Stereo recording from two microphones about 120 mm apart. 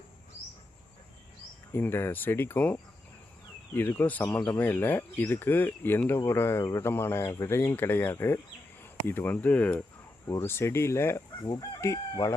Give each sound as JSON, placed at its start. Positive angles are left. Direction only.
{"t": 1.7, "sound": "speech", "side_deg": 20}
{"t": 10.2, "sound": "speech", "side_deg": 25}
{"t": 11.4, "sound": "chicken", "side_deg": 35}